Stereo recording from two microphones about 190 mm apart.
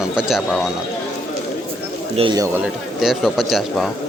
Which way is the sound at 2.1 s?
25° right (ahead or behind).